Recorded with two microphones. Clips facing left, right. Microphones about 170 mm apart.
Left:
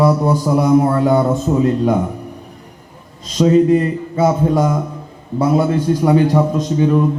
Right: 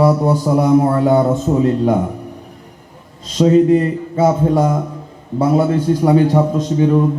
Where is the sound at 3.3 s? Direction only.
35° right (ahead or behind).